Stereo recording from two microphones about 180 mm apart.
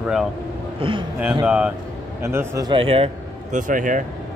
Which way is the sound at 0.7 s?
25° right (ahead or behind).